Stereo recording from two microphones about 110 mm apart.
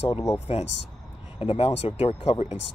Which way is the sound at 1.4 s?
60° left (ahead or behind).